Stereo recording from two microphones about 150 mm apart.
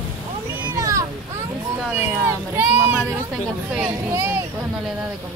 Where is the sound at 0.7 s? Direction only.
25° right (ahead or behind).